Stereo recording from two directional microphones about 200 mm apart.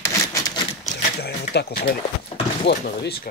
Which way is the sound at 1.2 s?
55° left (ahead or behind).